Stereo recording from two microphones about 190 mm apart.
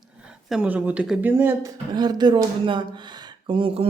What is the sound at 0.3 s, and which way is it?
Speech, 5° right (ahead or behind).